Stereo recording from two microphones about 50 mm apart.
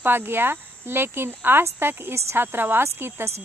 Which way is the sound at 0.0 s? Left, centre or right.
Right.